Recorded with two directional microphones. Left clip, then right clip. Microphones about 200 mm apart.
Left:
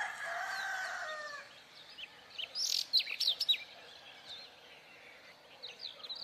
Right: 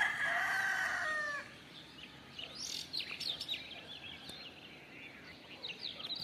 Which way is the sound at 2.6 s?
35° right (ahead or behind).